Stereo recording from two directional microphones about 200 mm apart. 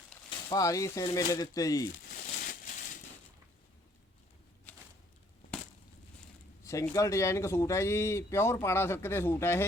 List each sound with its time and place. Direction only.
0.3 s speech: 20° left (ahead or behind)
6.7 s speech: 15° left (ahead or behind)